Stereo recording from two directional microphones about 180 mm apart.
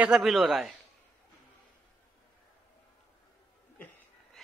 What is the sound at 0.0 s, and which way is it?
Speech, centre (ahead or behind).